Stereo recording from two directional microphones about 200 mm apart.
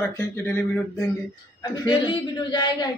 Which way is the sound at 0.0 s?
10° left (ahead or behind).